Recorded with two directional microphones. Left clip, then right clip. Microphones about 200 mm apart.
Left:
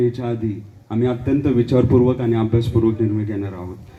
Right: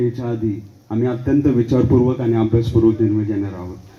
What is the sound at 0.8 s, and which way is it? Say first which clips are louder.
A man's voice: right 1 dB; 20° right (ahead or behind).